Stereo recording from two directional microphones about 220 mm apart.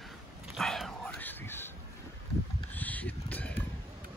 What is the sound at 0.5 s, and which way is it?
Whispering, centre (ahead or behind).